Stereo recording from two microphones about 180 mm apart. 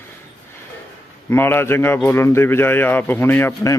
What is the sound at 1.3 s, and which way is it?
Speech, 10° left (ahead or behind).